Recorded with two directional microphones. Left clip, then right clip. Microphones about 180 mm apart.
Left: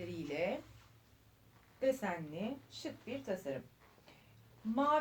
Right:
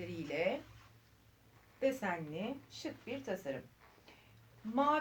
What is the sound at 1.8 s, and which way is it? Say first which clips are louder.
Speech: even; 35° right (ahead or behind).